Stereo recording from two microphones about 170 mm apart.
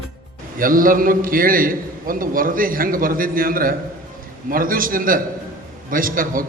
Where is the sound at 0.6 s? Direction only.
55° right (ahead or behind).